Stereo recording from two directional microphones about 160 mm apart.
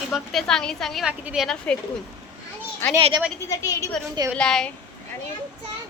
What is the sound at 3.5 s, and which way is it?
Speech, 20° left (ahead or behind).